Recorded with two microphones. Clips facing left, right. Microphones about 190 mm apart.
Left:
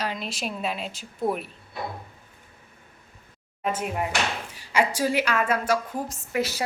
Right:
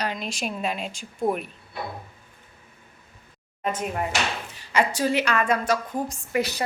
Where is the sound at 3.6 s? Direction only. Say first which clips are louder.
Even; 5° left (ahead or behind).